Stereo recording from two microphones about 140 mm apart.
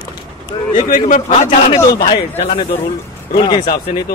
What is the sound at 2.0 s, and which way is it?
Speech, 40° left (ahead or behind).